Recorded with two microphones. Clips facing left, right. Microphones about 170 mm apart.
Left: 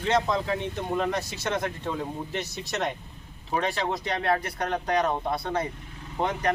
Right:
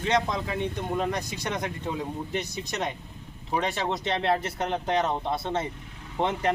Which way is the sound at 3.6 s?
20° right (ahead or behind).